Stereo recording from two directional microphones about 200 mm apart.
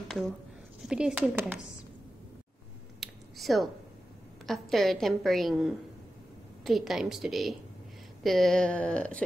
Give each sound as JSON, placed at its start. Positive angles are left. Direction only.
{"t": 0.8, "sound": "a woman's voice", "side_deg": -5}
{"t": 3.0, "sound": "finger snapping", "side_deg": 0}
{"t": 4.5, "sound": "a woman's voice", "side_deg": 0}